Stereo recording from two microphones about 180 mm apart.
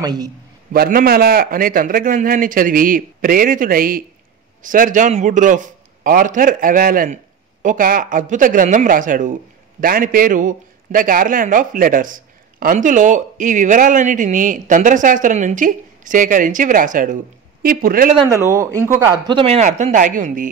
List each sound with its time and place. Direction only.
0.0 s a man's voice: 20° right (ahead or behind)
0.7 s speech: 55° right (ahead or behind)
18.3 s speech: 15° right (ahead or behind)
19.2 s speech: 30° right (ahead or behind)